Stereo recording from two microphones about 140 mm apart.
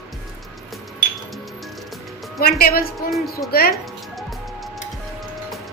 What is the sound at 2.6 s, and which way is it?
Music, 90° left.